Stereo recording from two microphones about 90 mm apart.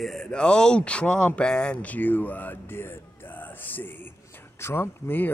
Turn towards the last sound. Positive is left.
turn(degrees=25)  # may be behind; listen again after turning